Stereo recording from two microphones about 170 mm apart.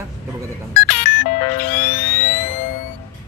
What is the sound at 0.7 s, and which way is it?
Music, 55° left (ahead or behind).